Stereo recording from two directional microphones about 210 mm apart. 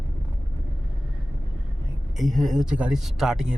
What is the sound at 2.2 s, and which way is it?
Speech, centre (ahead or behind).